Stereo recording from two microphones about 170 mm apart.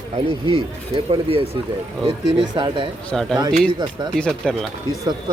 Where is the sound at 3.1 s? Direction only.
Centre (ahead or behind).